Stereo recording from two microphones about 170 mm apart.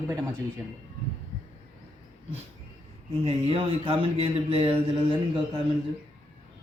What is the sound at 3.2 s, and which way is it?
Speech, 35° right (ahead or behind).